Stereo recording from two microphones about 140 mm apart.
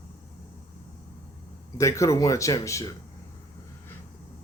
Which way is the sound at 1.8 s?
20° left (ahead or behind).